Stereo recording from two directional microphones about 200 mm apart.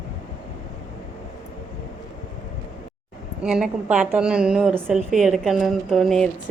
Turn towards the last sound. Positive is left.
turn(degrees=0)  # may be behind; listen again after turning